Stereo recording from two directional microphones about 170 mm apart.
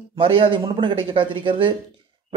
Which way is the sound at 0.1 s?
30° right (ahead or behind).